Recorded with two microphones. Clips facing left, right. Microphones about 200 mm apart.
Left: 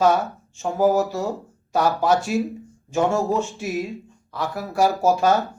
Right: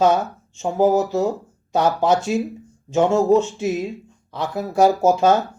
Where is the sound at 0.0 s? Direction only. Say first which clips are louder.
Right 1 dB; 20° right (ahead or behind).